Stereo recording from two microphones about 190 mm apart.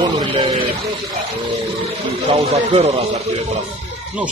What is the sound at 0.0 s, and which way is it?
Speech, 25° right (ahead or behind).